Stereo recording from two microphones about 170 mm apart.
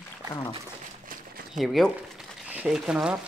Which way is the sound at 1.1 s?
55° right (ahead or behind).